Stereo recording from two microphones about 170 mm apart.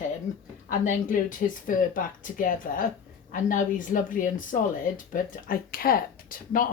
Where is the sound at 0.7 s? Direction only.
50° left (ahead or behind).